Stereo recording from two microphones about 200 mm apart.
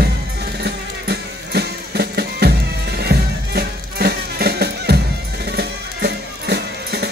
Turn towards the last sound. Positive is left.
turn(degrees=-55)  # may be behind; listen again after turning